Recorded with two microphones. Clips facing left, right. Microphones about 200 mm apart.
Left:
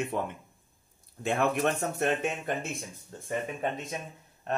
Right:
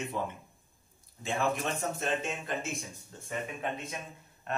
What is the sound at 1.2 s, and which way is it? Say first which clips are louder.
A man's voice: left 4 dB; 60° left (ahead or behind).